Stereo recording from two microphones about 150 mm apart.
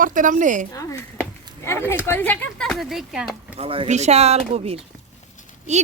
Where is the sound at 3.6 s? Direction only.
40° right (ahead or behind).